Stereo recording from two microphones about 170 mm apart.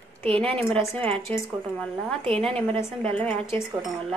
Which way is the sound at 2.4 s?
5° left (ahead or behind).